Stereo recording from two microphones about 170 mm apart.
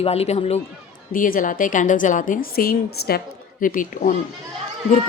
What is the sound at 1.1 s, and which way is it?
A woman's voice, 55° left (ahead or behind).